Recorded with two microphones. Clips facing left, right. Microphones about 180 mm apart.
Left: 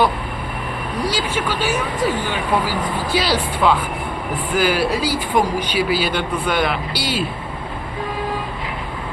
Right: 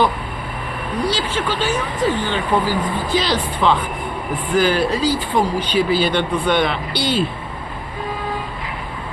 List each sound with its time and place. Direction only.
1.0 s speech: 10° left (ahead or behind)